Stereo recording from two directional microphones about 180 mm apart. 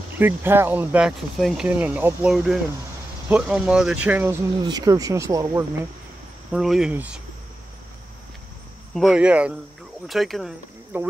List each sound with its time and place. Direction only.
0.2 s speech: 10° right (ahead or behind)
4.6 s speech: 25° right (ahead or behind)
6.5 s speech: centre (ahead or behind)
8.9 s speech: 5° right (ahead or behind)
10.9 s speech: 10° right (ahead or behind)